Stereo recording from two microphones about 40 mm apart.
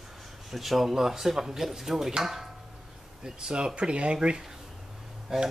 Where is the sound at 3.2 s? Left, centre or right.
Centre.